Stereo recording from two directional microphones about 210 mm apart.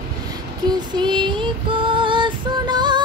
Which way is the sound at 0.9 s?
20° right (ahead or behind).